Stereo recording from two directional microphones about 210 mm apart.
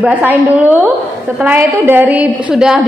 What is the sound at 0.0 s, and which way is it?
A woman's voice, 10° right (ahead or behind).